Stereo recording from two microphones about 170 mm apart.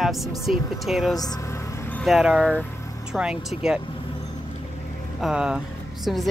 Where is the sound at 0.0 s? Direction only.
Centre (ahead or behind).